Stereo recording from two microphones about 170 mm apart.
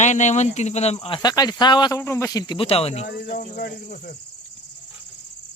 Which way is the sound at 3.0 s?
65° left (ahead or behind).